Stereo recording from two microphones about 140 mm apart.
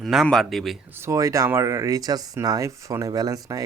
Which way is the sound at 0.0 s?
Centre (ahead or behind).